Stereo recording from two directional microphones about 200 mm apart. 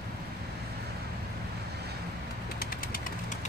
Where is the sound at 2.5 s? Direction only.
45° left (ahead or behind).